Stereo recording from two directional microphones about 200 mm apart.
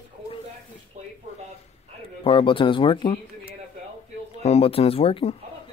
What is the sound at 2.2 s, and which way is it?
Speech, 25° left (ahead or behind).